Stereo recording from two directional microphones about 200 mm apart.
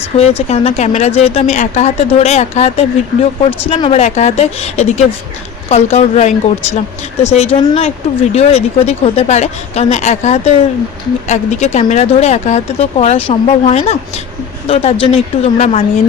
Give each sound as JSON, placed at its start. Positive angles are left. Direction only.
{"t": 0.2, "sound": "speech", "side_deg": 30}